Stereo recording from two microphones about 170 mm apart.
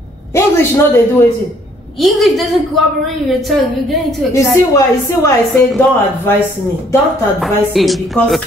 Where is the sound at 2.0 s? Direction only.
Centre (ahead or behind).